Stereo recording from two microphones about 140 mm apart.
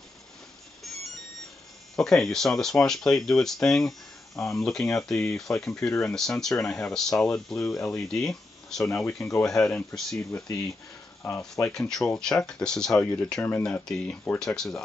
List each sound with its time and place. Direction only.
0.8 s music: centre (ahead or behind)
2.0 s speech: 5° left (ahead or behind)
11.2 s speech: 15° left (ahead or behind)
11.6 s speech: 5° left (ahead or behind)